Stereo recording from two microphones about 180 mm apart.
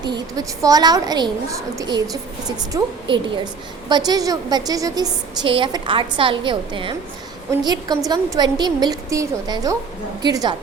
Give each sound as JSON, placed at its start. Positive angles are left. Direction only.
{"t": 0.0, "sound": "a woman's voice", "side_deg": -20}